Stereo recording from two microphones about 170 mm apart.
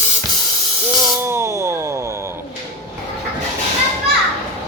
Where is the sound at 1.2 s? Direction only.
15° right (ahead or behind).